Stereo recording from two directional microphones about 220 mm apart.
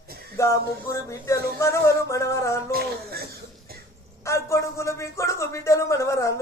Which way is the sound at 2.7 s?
45° right (ahead or behind).